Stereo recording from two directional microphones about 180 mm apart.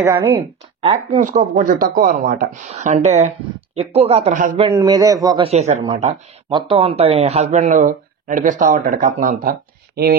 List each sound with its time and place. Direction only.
0.0 s speech: 15° right (ahead or behind)
0.7 s speech: 35° right (ahead or behind); by 2.6 s 50° right (ahead or behind)
2.7 s speech: 40° right (ahead or behind)
4.7 s a man's voice: 20° right (ahead or behind)
5.4 s speech: 35° right (ahead or behind); by 10.1 s 55° right (ahead or behind)